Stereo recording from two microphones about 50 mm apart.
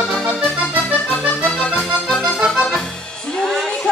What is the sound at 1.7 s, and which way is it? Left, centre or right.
Accordion, centre.